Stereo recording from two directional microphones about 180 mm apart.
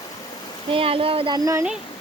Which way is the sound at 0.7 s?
30° right (ahead or behind).